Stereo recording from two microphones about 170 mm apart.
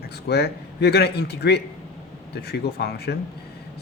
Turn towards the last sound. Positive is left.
turn(degrees=70)  # may be behind; listen again after turning